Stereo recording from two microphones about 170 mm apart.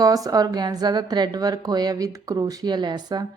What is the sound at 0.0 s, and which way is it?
A woman's voice, 20° right (ahead or behind).